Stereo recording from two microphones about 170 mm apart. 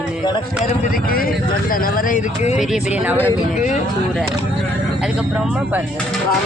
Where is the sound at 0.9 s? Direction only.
55° left (ahead or behind).